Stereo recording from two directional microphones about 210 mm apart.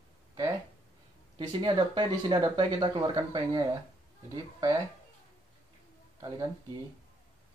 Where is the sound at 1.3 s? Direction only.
20° right (ahead or behind).